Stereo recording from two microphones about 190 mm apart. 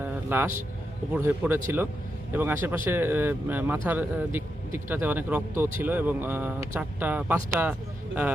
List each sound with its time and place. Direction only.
0.0 s music: 10° right (ahead or behind)
1.1 s speech: 10° right (ahead or behind)